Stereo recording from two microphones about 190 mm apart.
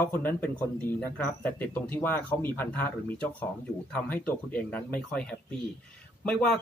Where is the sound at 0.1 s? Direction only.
10° left (ahead or behind).